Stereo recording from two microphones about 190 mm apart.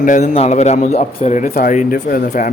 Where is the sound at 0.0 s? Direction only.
40° left (ahead or behind).